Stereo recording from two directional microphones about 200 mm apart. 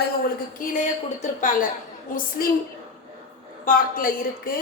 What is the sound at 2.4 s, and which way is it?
Speech, 50° left (ahead or behind).